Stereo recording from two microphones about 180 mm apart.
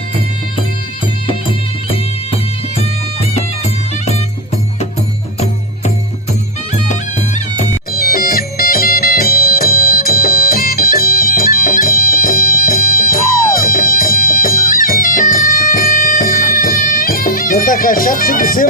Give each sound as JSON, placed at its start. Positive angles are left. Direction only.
{"t": 1.3, "sound": "music", "side_deg": 30}
{"t": 7.3, "sound": "music", "side_deg": 40}
{"t": 8.0, "sound": "music", "side_deg": 55}